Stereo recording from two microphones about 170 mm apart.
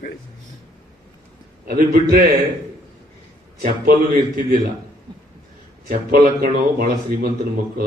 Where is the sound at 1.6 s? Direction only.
65° right (ahead or behind).